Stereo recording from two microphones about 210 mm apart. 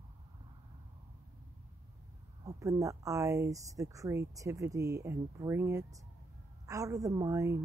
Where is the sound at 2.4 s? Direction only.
15° right (ahead or behind).